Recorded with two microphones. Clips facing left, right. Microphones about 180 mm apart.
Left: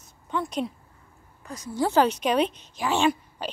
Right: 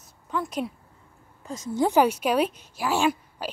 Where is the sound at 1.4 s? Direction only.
25° right (ahead or behind).